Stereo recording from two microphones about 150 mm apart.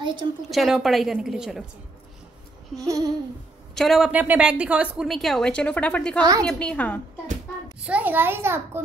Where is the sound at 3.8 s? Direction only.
Centre (ahead or behind).